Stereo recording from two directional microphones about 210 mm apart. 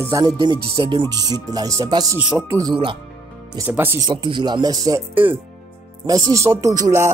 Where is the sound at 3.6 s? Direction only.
10° right (ahead or behind).